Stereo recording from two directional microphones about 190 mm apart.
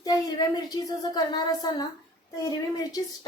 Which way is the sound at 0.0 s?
20° left (ahead or behind).